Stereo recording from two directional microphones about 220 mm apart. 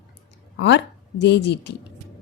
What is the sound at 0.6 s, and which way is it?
Speech, 55° left (ahead or behind).